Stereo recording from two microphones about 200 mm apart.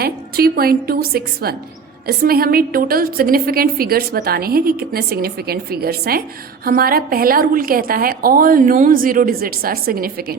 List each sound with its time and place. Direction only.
0.0 s a woman's voice: 50° right (ahead or behind)